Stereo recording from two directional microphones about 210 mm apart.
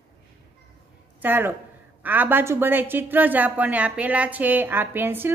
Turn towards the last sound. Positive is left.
turn(degrees=-10)  # may be behind; listen again after turning